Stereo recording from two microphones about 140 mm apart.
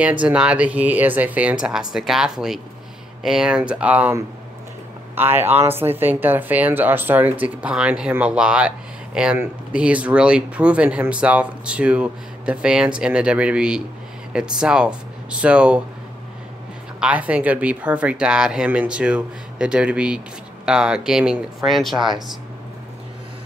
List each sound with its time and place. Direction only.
0.0 s speech: 10° right (ahead or behind)
17.0 s speech: 10° right (ahead or behind)